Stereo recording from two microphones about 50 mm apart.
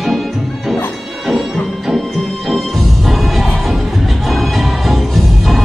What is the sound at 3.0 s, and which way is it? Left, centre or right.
Music, centre.